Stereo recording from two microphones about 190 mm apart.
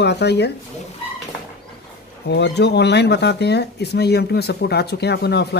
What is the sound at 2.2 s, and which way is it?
Speech, 65° left (ahead or behind).